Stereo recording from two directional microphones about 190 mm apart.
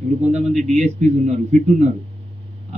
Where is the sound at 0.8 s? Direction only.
35° right (ahead or behind).